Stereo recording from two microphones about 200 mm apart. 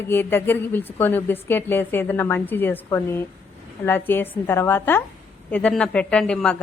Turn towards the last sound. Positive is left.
turn(degrees=5)  # may be behind; listen again after turning